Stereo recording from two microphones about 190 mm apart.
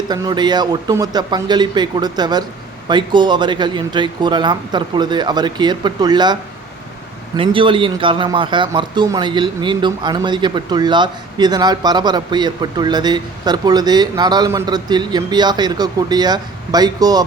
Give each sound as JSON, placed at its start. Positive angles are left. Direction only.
{"t": 0.1, "sound": "a man's voice", "side_deg": -20}
{"t": 7.3, "sound": "a man's voice", "side_deg": -25}